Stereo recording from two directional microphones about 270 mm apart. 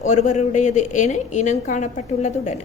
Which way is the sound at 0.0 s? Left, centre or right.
Left.